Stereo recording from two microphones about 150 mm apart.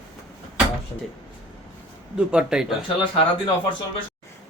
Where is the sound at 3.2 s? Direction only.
35° left (ahead or behind).